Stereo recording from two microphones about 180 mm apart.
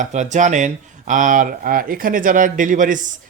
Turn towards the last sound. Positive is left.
turn(degrees=-45)  # may be behind; listen again after turning